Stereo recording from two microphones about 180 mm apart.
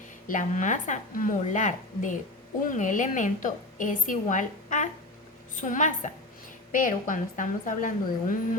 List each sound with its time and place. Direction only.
0.3 s a woman's voice: 45° left (ahead or behind)